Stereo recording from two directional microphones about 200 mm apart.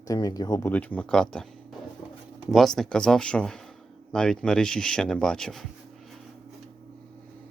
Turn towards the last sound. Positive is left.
turn(degrees=0)  # may be behind; listen again after turning